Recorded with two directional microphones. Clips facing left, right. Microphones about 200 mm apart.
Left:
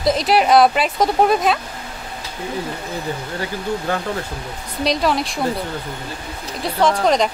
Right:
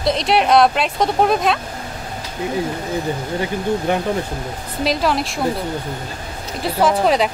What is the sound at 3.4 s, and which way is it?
Speech, 20° right (ahead or behind).